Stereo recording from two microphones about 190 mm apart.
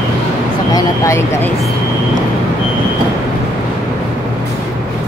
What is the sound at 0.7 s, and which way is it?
Speech, 15° left (ahead or behind).